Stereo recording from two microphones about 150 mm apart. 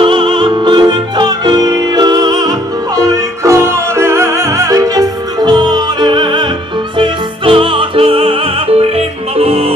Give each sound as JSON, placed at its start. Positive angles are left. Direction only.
{"t": 0.0, "sound": "music", "side_deg": -35}
{"t": 7.0, "sound": "opera", "side_deg": -35}